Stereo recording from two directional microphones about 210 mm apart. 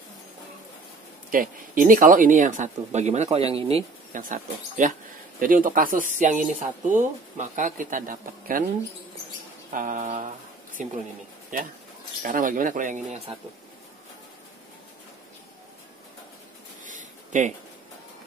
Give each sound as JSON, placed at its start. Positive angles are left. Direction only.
{"t": 1.3, "sound": "speech", "side_deg": -40}
{"t": 9.7, "sound": "speech", "side_deg": -40}
{"t": 16.8, "sound": "a sound", "side_deg": -35}